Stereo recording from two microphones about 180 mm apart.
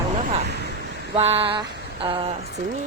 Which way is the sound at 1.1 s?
35° right (ahead or behind).